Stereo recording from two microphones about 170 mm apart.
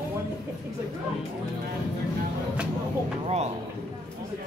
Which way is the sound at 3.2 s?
40° right (ahead or behind).